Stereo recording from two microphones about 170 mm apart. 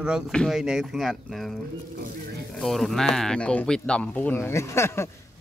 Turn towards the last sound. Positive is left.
turn(degrees=15)  # may be behind; listen again after turning